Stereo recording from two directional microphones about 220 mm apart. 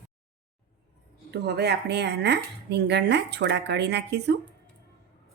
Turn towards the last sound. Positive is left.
turn(degrees=-50)  # may be behind; listen again after turning